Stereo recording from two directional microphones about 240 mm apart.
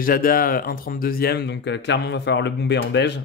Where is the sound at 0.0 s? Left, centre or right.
Left.